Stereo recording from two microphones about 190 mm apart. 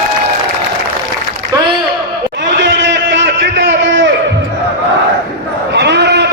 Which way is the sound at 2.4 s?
70° right (ahead or behind).